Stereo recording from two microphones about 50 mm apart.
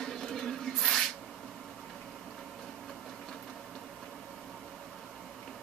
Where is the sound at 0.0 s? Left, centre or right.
Centre.